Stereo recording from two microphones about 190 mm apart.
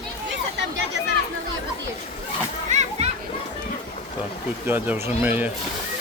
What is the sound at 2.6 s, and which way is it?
Children playing, 40° right (ahead or behind).